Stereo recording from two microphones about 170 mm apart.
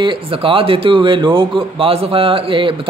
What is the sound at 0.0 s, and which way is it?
A man's voice, 30° right (ahead or behind).